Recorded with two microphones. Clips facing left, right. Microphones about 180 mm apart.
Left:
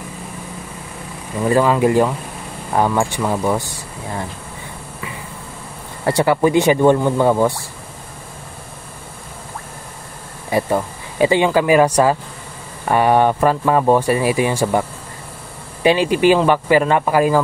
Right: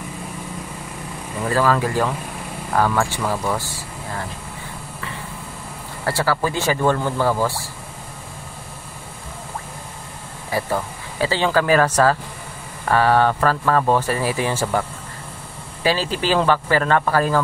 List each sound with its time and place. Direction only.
1.4 s speech: 20° left (ahead or behind)
6.0 s speech: 20° left (ahead or behind)
10.5 s speech: 20° left (ahead or behind)